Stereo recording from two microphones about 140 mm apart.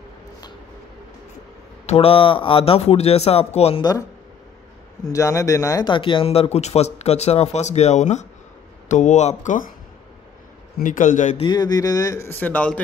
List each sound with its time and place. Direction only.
1.9 s speech: 45° left (ahead or behind)
5.0 s speech: 20° left (ahead or behind)
5.9 s speech: 35° left (ahead or behind); by 9.7 s 65° left (ahead or behind)
10.8 s speech: 65° left (ahead or behind)
11.4 s speech: 30° left (ahead or behind); by 12.8 s 10° left (ahead or behind)